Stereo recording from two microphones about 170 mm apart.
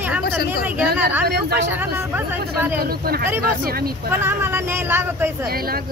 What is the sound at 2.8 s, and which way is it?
Speech, 60° right (ahead or behind).